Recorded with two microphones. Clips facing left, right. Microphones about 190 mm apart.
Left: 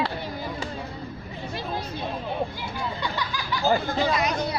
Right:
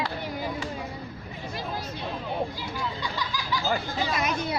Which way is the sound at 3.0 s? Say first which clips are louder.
Left 2 dB; 60° left (ahead or behind).